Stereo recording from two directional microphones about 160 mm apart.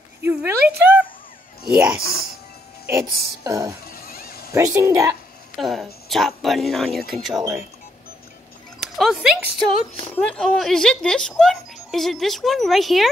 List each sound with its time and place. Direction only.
0.2 s a sound: 10° right (ahead or behind)
2.9 s speech: 20° right (ahead or behind)
3.8 s music: 70° left (ahead or behind)
4.5 s speech: 20° right (ahead or behind)
5.6 s speech: centre (ahead or behind)
8.7 s a sound: centre (ahead or behind)
10.1 s speech: 10° left (ahead or behind)